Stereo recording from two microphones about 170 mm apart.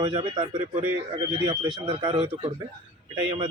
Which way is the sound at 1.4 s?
20° right (ahead or behind).